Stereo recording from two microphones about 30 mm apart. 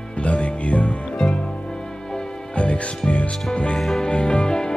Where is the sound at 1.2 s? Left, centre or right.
Left.